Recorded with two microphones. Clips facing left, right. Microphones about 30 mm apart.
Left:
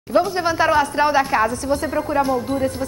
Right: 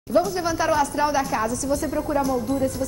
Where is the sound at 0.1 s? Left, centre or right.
Left.